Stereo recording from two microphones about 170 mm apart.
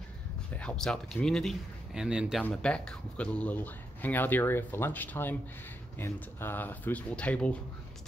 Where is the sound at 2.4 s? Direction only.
5° left (ahead or behind).